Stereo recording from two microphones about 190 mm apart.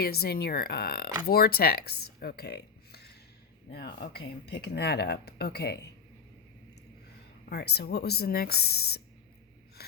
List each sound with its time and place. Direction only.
0.0 s speech: 55° left (ahead or behind)
7.5 s speech: 60° left (ahead or behind)